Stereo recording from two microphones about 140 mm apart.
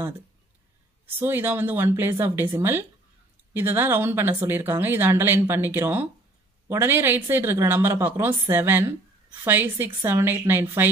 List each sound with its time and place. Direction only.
1.0 s a woman's voice: 15° right (ahead or behind)